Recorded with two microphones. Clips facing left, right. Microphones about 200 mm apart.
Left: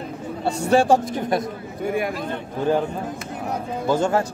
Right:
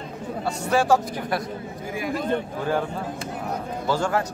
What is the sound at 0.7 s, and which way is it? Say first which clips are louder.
Speech: left 4 dB; 25° left (ahead or behind).